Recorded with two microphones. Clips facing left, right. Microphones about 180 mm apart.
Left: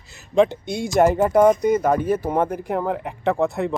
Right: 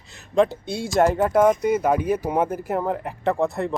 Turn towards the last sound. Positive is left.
turn(degrees=0)  # may be behind; listen again after turning